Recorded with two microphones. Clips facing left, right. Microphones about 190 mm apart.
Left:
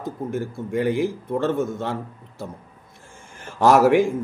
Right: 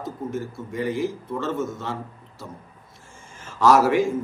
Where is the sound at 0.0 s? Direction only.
55° left (ahead or behind).